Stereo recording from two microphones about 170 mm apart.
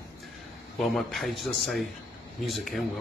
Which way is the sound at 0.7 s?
Centre (ahead or behind).